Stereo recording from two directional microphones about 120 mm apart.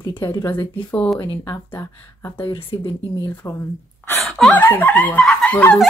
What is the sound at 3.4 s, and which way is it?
Speech, 25° left (ahead or behind).